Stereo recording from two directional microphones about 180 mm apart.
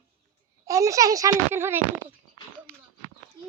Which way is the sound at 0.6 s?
20° right (ahead or behind).